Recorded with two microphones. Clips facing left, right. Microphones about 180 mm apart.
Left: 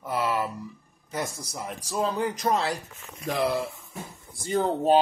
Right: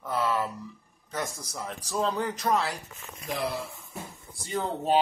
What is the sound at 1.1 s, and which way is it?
A man's voice, 10° left (ahead or behind).